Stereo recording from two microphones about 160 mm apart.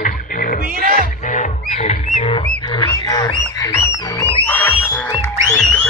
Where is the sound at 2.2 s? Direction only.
30° left (ahead or behind).